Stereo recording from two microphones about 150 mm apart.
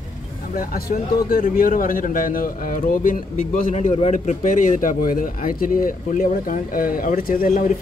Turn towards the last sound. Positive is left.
turn(degrees=65)  # may be behind; listen again after turning